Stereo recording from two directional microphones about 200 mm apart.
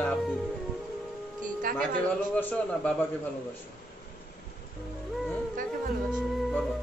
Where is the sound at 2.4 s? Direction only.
10° left (ahead or behind).